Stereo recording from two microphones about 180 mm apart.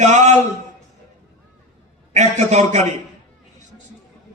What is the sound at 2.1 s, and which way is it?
Speech, 40° right (ahead or behind).